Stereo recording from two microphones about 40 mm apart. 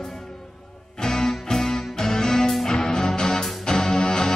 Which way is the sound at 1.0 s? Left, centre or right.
Centre.